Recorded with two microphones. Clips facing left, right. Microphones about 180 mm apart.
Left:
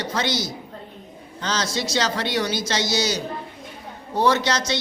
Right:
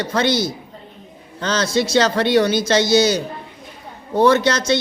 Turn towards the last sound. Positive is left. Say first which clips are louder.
# right 6 dB
turn(degrees=-55)  # may be behind; listen again after turning